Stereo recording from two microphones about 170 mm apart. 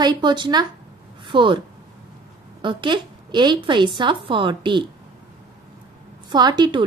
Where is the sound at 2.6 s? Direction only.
30° right (ahead or behind).